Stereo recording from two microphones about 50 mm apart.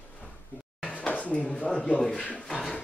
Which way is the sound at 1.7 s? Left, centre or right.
Centre.